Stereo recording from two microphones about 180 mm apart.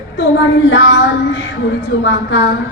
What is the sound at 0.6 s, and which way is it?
A woman's voice, 75° left (ahead or behind).